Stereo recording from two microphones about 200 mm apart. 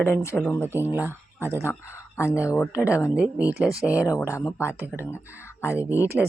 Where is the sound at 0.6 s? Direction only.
10° right (ahead or behind).